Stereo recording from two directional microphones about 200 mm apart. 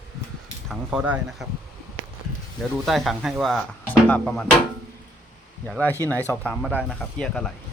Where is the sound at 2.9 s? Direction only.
Centre (ahead or behind).